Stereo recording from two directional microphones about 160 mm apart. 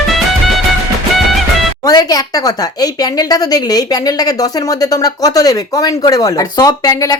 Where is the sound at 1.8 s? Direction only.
25° left (ahead or behind).